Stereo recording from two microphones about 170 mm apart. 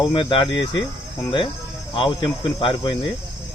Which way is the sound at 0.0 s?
30° left (ahead or behind).